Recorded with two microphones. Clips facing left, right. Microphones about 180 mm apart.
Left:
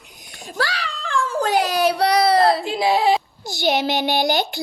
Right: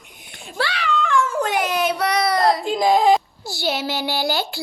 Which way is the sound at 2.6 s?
45° right (ahead or behind).